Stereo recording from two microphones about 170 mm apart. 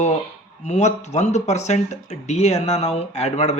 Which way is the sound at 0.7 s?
40° left (ahead or behind).